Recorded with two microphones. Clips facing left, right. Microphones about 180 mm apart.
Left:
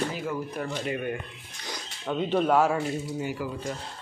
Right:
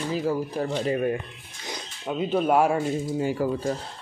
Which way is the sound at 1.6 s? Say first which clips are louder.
Right 2 dB; 20° right (ahead or behind).